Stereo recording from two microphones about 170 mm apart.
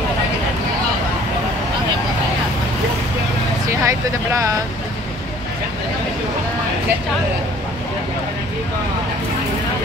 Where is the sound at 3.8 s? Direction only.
20° right (ahead or behind).